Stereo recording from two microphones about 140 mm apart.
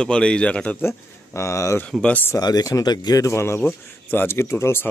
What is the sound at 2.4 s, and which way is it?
Speech, 25° left (ahead or behind).